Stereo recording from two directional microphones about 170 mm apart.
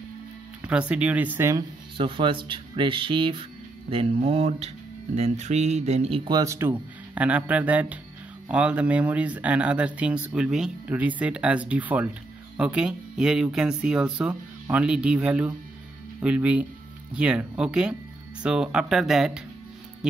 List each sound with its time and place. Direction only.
0.7 s speech: 5° right (ahead or behind)
2.0 s speech: 30° right (ahead or behind); by 19.4 s 5° right (ahead or behind)